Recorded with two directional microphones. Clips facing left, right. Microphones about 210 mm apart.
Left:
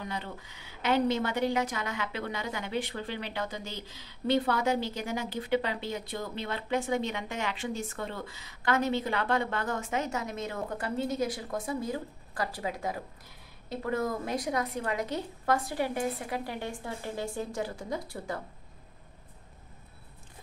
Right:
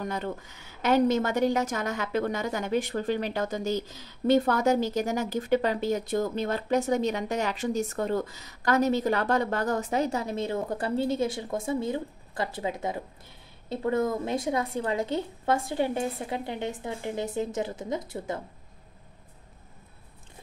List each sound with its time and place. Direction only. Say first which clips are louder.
0.0 s a woman's voice: right 6 dB; 45° right (ahead or behind); by 18.4 s 20° right (ahead or behind)